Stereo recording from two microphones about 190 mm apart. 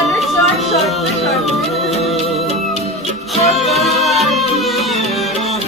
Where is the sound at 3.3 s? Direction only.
35° left (ahead or behind).